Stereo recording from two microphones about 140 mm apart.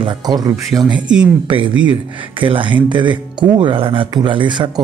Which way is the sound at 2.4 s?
35° right (ahead or behind).